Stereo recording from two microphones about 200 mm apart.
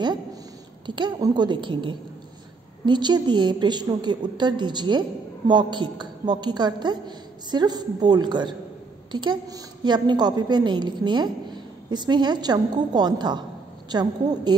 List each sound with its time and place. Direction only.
0.0 s a woman's voice: 20° right (ahead or behind)